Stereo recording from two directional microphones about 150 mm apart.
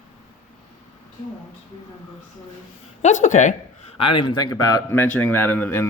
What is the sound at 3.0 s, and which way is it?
Speech, 55° left (ahead or behind).